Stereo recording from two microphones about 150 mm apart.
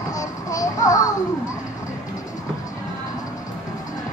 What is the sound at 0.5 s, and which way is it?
Music, 25° left (ahead or behind).